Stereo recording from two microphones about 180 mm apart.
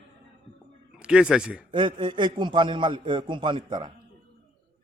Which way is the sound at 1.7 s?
25° right (ahead or behind).